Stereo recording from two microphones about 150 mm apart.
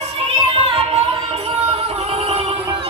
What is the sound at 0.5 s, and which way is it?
Music, 40° right (ahead or behind).